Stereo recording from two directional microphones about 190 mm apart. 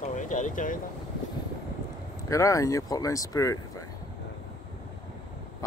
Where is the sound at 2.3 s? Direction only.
15° left (ahead or behind).